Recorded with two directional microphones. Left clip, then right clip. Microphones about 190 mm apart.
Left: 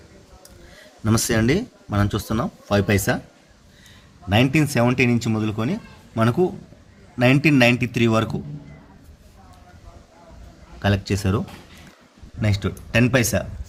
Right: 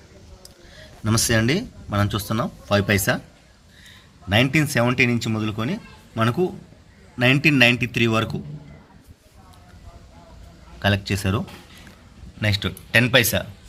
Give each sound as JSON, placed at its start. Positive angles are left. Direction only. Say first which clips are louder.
{"t": 1.0, "sound": "speech", "louder": "even", "side_deg": 5}
{"t": 10.8, "sound": "speech", "louder": "right 1 dB", "side_deg": 5}